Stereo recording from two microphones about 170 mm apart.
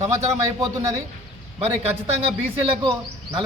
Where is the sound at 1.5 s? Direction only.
35° right (ahead or behind).